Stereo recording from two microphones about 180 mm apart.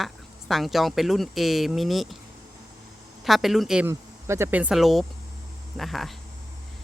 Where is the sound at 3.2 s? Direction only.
Centre (ahead or behind).